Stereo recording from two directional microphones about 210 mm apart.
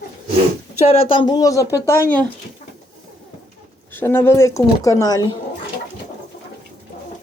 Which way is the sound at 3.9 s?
10° left (ahead or behind).